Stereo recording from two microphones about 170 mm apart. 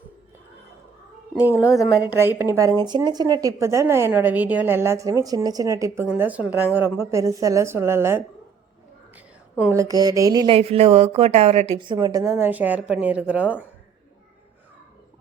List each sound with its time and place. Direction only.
1.5 s a woman's voice: 15° left (ahead or behind)
2.0 s speech: 10° right (ahead or behind)
9.1 s a sound: 10° right (ahead or behind)
9.8 s speech: 20° right (ahead or behind)